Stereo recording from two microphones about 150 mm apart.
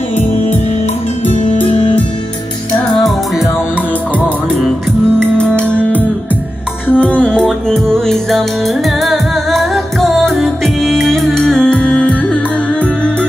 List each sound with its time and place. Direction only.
1.2 s music: 45° left (ahead or behind)
5.2 s music: 5° left (ahead or behind)